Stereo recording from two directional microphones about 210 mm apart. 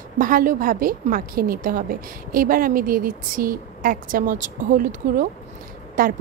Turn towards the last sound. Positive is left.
turn(degrees=-40)  # may be behind; listen again after turning